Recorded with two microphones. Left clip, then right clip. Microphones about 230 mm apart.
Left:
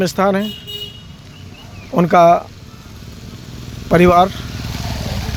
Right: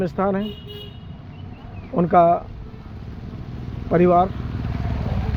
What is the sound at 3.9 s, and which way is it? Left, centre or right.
Speech, left.